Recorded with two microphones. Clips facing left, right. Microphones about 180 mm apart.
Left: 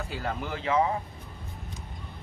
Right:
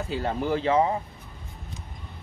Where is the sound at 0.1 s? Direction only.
30° right (ahead or behind).